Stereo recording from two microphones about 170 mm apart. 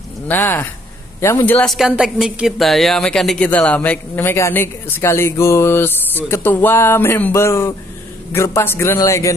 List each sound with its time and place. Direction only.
0.3 s a woman's voice: 10° left (ahead or behind)